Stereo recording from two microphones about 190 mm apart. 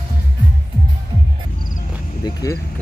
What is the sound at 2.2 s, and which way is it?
Speech, 20° left (ahead or behind).